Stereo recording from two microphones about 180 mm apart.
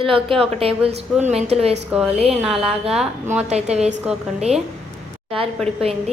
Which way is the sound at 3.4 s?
35° right (ahead or behind).